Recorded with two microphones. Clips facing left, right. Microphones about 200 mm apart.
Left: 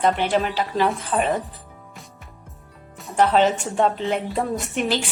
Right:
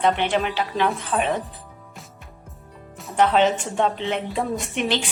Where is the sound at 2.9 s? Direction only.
Centre (ahead or behind).